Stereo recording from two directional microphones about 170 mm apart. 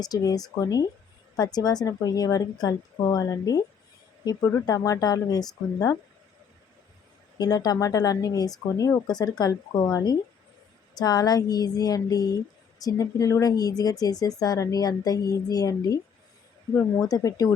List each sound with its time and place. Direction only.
0.0 s speech: 20° left (ahead or behind)
7.3 s speech: 25° left (ahead or behind)